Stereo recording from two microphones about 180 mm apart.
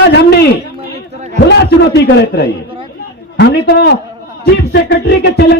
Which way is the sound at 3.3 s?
65° left (ahead or behind).